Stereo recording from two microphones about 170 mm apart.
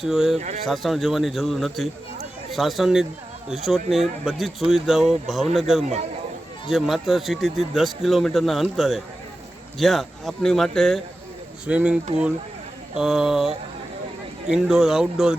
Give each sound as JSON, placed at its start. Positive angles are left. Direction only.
{"t": 0.0, "sound": "speech", "side_deg": 0}
{"t": 0.3, "sound": "speech", "side_deg": -40}
{"t": 0.6, "sound": "speech", "side_deg": 0}
{"t": 13.0, "sound": "speech", "side_deg": 0}